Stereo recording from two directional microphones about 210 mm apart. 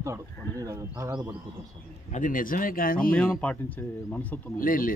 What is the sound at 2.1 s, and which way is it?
Speech, 40° left (ahead or behind).